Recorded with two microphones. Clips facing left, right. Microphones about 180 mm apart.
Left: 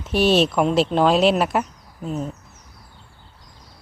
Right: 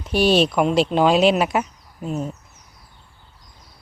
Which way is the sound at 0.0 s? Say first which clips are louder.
Even; centre (ahead or behind).